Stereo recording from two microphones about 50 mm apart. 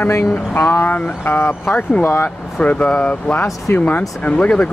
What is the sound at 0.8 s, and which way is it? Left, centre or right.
Speech, left.